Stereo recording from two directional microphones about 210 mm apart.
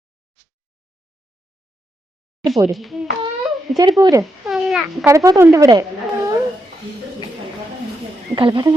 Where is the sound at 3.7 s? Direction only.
15° right (ahead or behind).